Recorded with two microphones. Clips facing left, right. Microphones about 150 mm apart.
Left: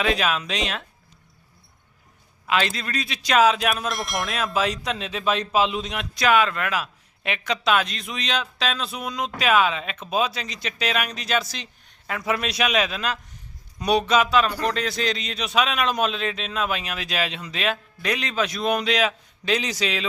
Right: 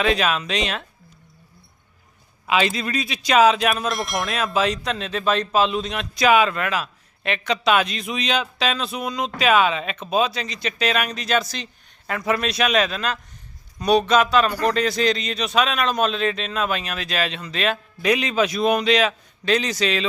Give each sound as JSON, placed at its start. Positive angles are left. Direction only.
{"t": 0.0, "sound": "a man's voice", "side_deg": 5}
{"t": 2.5, "sound": "a man's voice", "side_deg": -5}
{"t": 6.1, "sound": "a man's voice", "side_deg": -5}